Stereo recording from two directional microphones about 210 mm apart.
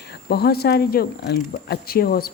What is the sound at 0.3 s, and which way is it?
Speech, 50° left (ahead or behind).